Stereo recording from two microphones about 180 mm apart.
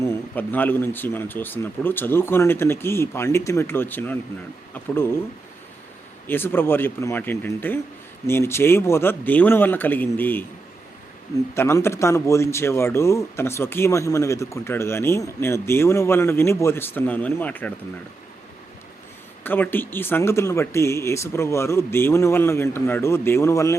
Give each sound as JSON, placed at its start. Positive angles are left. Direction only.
{"t": 0.0, "sound": "a man's voice", "side_deg": 10}
{"t": 6.2, "sound": "a man's voice", "side_deg": 10}
{"t": 11.5, "sound": "a man's voice", "side_deg": 15}
{"t": 19.5, "sound": "a man's voice", "side_deg": 10}